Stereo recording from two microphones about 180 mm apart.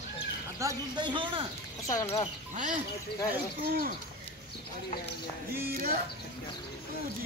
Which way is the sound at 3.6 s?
55° right (ahead or behind).